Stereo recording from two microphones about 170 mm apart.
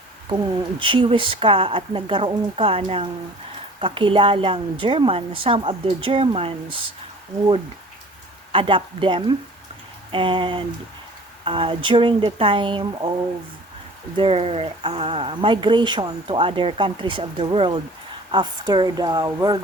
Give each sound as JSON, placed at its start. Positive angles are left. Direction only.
{"t": 0.8, "sound": "speech", "side_deg": -30}
{"t": 8.5, "sound": "speech", "side_deg": -30}
{"t": 14.2, "sound": "speech", "side_deg": -35}